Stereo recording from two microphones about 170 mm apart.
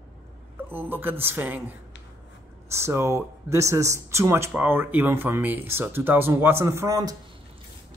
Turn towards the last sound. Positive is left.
turn(degrees=-20)  # may be behind; listen again after turning